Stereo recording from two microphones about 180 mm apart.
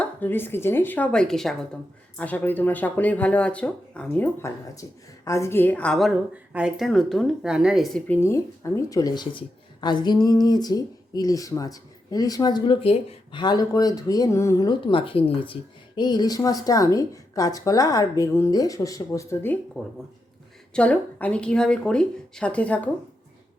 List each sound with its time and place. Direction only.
0.0 s speech: 10° left (ahead or behind)
19.8 s speech: centre (ahead or behind)